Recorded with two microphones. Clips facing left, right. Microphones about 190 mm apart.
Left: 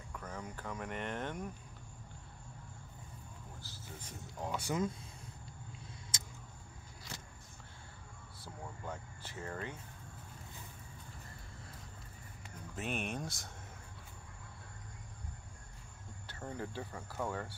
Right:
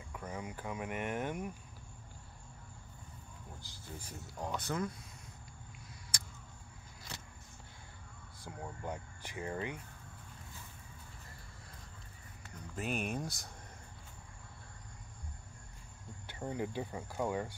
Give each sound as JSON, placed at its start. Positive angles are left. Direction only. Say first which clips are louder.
{"t": 0.1, "sound": "speech", "louder": "right 2 dB", "side_deg": -10}
{"t": 4.4, "sound": "speech", "louder": "left 1 dB", "side_deg": 5}
{"t": 6.1, "sound": "a sound", "louder": "right 2 dB", "side_deg": 25}
{"t": 8.4, "sound": "speech", "louder": "right 3 dB", "side_deg": -15}
{"t": 12.7, "sound": "speech", "louder": "right 2 dB", "side_deg": 0}
{"t": 16.3, "sound": "speech", "louder": "right 4 dB", "side_deg": -15}